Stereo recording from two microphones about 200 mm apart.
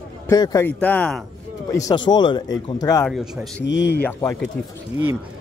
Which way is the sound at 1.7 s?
15° left (ahead or behind).